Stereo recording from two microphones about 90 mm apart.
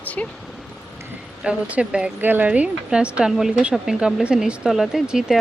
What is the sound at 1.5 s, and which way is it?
Speech, 10° right (ahead or behind).